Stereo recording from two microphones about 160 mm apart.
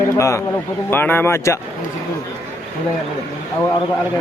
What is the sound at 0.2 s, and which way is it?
A man's voice, 20° left (ahead or behind).